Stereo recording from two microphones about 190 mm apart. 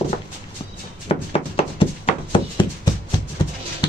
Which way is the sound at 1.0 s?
30° left (ahead or behind).